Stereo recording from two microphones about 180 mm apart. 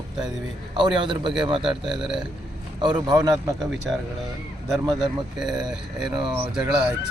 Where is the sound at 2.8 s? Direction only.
25° right (ahead or behind).